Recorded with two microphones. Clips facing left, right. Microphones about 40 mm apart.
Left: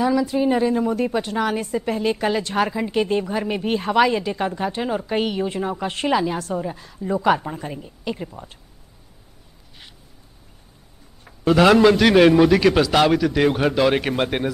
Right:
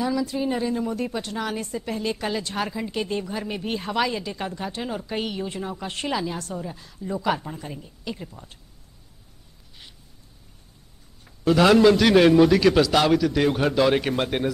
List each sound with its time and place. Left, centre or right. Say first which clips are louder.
0.0 s a woman's voice: left 6 dB; centre
11.2 s a woman's voice: left 3 dB; centre